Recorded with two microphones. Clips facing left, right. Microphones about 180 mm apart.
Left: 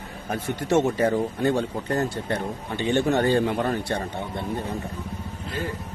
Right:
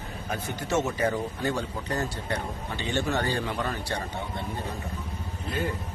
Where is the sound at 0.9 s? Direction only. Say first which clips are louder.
Left 5 dB; 30° left (ahead or behind).